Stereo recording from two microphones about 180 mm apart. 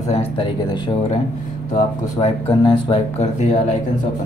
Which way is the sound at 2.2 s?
30° left (ahead or behind).